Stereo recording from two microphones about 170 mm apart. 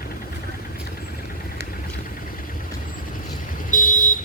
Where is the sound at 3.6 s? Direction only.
50° left (ahead or behind).